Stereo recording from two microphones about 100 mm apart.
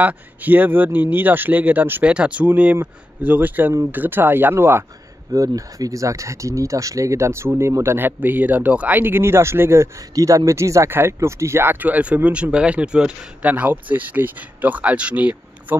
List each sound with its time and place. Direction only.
0.0 s speech: 15° right (ahead or behind)
5.3 s speech: 35° right (ahead or behind); by 15.8 s 15° right (ahead or behind)